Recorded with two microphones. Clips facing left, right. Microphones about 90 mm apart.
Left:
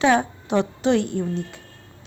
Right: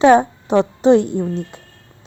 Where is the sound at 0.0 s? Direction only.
35° right (ahead or behind).